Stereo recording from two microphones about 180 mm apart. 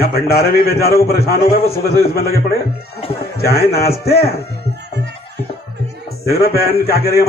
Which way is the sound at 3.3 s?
60° left (ahead or behind).